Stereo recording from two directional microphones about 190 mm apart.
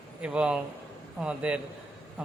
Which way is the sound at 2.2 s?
5° right (ahead or behind).